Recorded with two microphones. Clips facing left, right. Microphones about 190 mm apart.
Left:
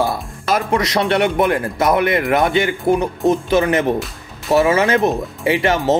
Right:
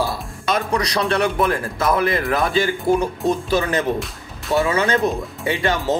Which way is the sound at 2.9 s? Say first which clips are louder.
Left 2 dB; 55° left (ahead or behind).